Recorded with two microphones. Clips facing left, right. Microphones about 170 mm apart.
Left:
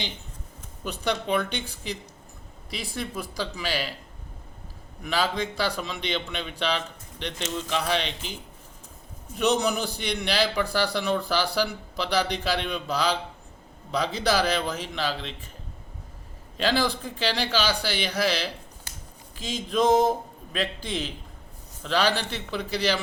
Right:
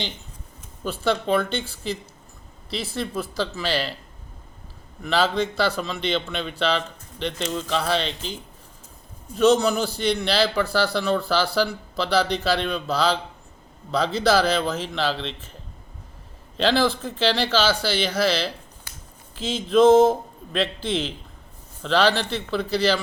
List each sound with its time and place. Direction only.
0.9 s a man's voice: 15° left (ahead or behind)
5.0 s a man's voice: 10° left (ahead or behind)
9.4 s a man's voice: 15° left (ahead or behind)
16.6 s a man's voice: 15° left (ahead or behind)
19.8 s a man's voice: 15° left (ahead or behind)